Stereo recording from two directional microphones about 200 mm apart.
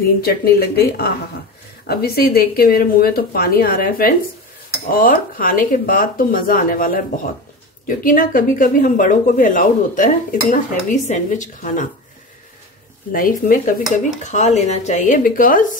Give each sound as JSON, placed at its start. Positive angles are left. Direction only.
{"t": 0.2, "sound": "speech", "side_deg": 50}
{"t": 13.1, "sound": "speech", "side_deg": 45}